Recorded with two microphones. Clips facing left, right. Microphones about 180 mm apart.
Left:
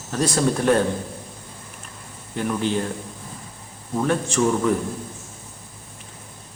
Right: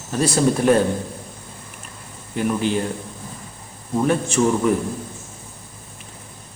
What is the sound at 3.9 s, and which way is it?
Speech, 10° right (ahead or behind).